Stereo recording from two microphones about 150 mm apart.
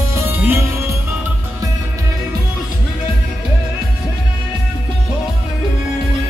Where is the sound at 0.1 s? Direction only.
15° right (ahead or behind).